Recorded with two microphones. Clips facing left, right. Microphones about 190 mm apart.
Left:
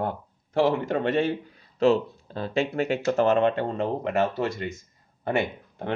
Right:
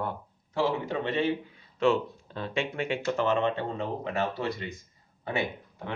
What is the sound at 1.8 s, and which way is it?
Speech, 35° left (ahead or behind).